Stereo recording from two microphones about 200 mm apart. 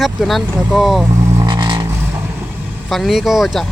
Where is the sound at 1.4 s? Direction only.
20° right (ahead or behind).